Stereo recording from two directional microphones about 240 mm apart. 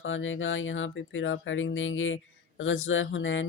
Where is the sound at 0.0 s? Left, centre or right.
Left.